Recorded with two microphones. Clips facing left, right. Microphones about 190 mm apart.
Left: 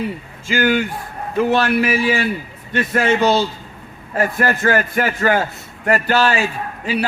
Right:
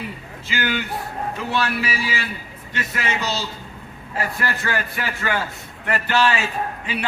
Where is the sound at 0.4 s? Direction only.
45° left (ahead or behind).